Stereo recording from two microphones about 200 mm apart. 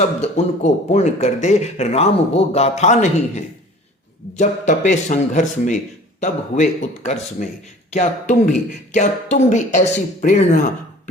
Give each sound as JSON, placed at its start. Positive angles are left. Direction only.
{"t": 0.2, "sound": "speech", "side_deg": 35}